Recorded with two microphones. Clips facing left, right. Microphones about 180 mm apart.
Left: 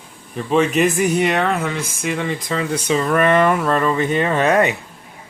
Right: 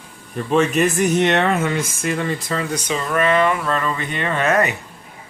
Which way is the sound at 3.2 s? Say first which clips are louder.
Even; 50° left (ahead or behind).